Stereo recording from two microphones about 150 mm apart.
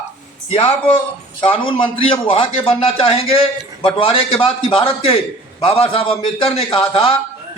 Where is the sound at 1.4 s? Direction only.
35° left (ahead or behind).